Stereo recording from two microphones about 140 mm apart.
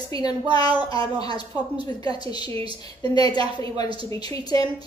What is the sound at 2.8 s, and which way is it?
A woman's voice, 30° left (ahead or behind).